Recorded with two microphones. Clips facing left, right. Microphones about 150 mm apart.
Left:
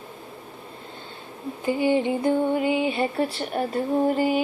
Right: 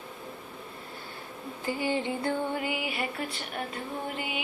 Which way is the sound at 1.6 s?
20° left (ahead or behind).